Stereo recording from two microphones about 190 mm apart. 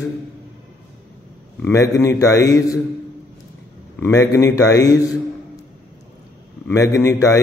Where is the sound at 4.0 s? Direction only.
15° left (ahead or behind).